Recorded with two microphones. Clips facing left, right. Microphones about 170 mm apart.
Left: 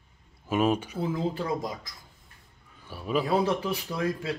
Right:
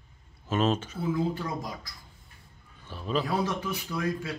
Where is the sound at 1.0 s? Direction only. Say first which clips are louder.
Even; 30° left (ahead or behind).